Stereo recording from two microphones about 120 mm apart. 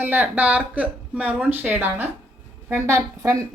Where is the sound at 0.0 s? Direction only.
15° right (ahead or behind).